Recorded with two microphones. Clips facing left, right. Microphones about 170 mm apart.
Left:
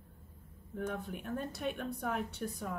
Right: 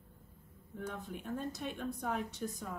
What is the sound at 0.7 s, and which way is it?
Speech, 60° left (ahead or behind).